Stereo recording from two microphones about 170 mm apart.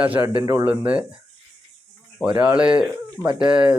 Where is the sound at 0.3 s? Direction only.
20° right (ahead or behind).